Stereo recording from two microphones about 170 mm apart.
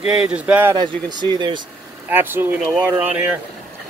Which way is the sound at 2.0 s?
10° right (ahead or behind).